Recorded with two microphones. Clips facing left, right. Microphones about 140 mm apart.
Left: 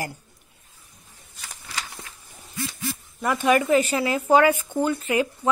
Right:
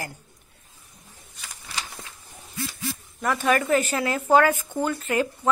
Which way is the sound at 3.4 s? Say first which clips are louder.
Left 3 dB; 10° left (ahead or behind).